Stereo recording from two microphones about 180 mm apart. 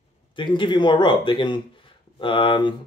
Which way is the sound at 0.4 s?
25° left (ahead or behind).